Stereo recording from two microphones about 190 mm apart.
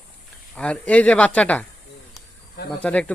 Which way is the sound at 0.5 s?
5° left (ahead or behind).